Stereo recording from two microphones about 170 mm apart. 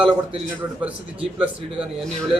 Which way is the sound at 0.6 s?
10° right (ahead or behind).